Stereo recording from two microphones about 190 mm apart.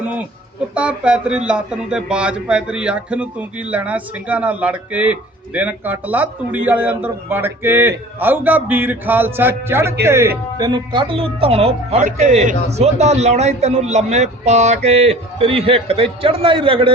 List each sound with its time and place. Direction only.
0.7 s a man's voice: 5° right (ahead or behind); by 16.9 s 25° right (ahead or behind)